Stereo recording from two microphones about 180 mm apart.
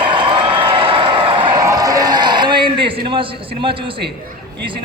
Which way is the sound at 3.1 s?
30° right (ahead or behind).